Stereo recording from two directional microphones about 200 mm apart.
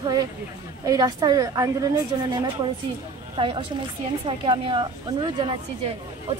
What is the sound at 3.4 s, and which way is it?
A woman's voice, 25° right (ahead or behind).